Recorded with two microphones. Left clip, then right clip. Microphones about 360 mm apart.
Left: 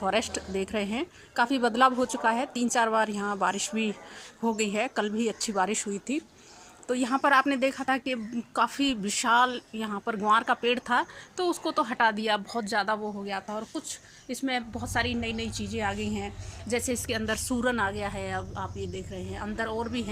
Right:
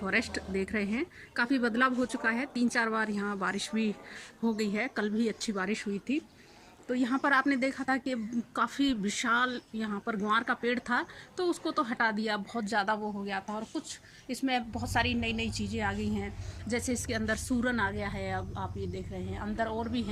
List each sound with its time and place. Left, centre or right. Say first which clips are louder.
0.0 s speech: left 3 dB; centre